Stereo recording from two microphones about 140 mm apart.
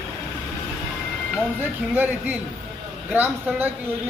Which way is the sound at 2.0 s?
10° right (ahead or behind).